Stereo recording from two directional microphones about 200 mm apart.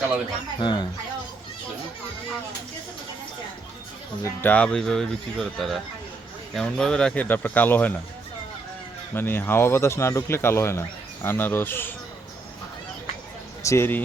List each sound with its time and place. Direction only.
0.6 s speech: 25° left (ahead or behind)
4.2 s a man's voice: 10° left (ahead or behind)
9.1 s a man's voice: 10° left (ahead or behind)
13.6 s speech: 15° left (ahead or behind)